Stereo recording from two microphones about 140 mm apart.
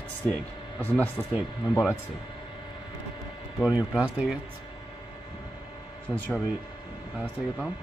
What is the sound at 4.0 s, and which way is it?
Speech, 10° right (ahead or behind).